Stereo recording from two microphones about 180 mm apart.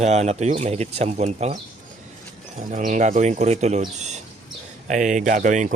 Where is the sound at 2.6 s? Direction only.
45° right (ahead or behind).